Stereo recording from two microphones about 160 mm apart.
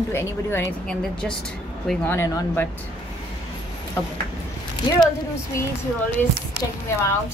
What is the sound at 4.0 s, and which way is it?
Speech, 15° left (ahead or behind).